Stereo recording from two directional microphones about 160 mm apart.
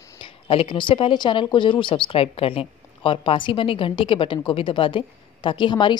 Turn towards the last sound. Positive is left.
turn(degrees=30)  # may be behind; listen again after turning